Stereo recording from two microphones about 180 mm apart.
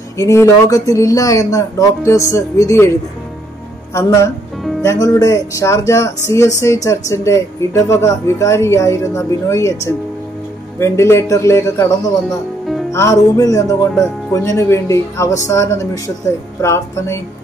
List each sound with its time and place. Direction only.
0.2 s speech: 15° left (ahead or behind)
3.9 s speech: 15° left (ahead or behind)
10.8 s speech: 15° left (ahead or behind)
12.3 s music: centre (ahead or behind)
12.9 s speech: 20° left (ahead or behind)